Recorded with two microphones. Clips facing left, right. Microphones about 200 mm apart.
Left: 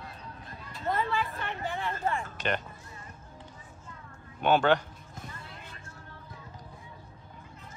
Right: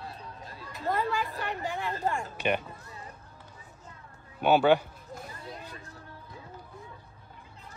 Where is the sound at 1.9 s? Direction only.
35° right (ahead or behind).